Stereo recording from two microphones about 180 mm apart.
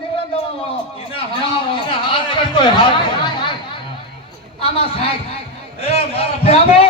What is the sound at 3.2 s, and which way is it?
Chatter, 25° left (ahead or behind).